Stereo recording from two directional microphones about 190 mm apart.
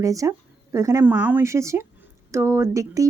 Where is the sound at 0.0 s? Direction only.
15° right (ahead or behind).